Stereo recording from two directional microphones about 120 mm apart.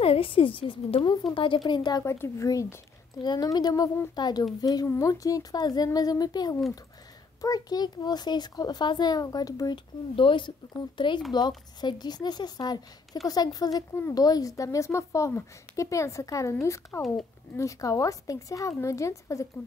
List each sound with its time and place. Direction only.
0.0 s a woman's voice: 50° left (ahead or behind)
2.0 s a woman's voice: 25° left (ahead or behind)
10.1 s a woman's voice: 45° left (ahead or behind); by 19.4 s 25° left (ahead or behind)